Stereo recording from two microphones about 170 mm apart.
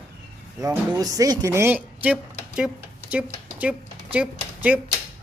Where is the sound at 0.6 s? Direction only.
20° right (ahead or behind).